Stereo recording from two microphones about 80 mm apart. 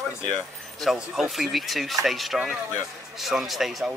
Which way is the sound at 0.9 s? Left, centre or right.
Centre.